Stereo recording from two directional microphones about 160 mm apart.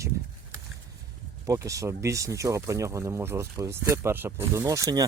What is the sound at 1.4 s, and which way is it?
Speech, 20° right (ahead or behind).